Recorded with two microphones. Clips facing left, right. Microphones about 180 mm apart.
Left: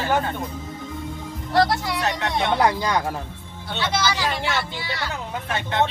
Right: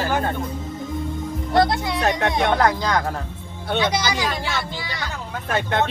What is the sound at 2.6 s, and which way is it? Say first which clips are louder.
Speech: right 1 dB; 10° left (ahead or behind).